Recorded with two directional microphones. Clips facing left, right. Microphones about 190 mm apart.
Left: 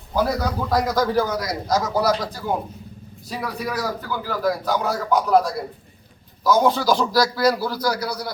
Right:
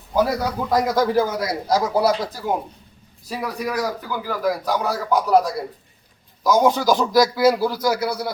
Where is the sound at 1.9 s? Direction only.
30° right (ahead or behind).